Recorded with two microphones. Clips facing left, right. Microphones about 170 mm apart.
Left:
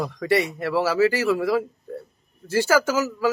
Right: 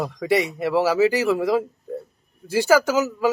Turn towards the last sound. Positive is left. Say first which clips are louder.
# right 2 dB
turn(degrees=-15)  # may be behind; listen again after turning